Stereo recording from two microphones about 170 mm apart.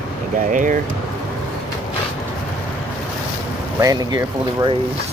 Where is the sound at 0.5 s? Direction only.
50° right (ahead or behind).